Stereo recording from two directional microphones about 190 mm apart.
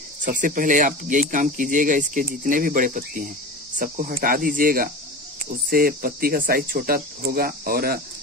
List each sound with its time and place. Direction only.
0.2 s speech: 45° right (ahead or behind)